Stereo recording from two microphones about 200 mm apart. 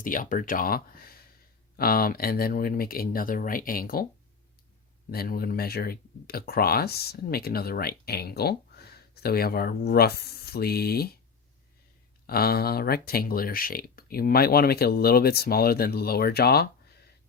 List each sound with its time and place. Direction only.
0.0 s speech: 40° left (ahead or behind)
5.1 s speech: 45° left (ahead or behind)
12.2 s speech: 50° left (ahead or behind)